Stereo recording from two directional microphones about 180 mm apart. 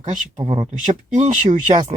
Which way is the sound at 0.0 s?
40° right (ahead or behind).